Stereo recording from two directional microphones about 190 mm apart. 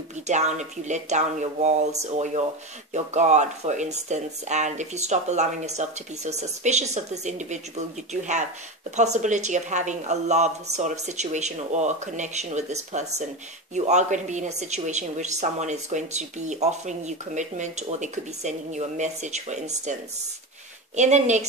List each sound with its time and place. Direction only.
0.3 s a woman's voice: 40° right (ahead or behind)